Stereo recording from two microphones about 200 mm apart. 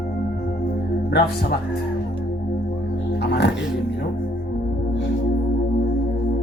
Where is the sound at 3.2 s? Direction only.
55° left (ahead or behind).